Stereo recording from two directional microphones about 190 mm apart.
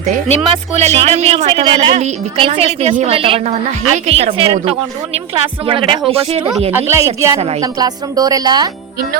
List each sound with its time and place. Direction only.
0.1 s a woman's voice: 35° right (ahead or behind)
6.7 s a woman's voice: 15° right (ahead or behind)